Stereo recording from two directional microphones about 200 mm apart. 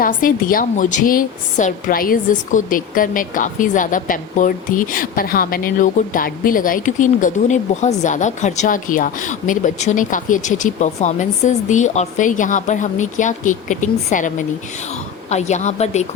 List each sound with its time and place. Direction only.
0.0 s a woman's voice: 45° left (ahead or behind)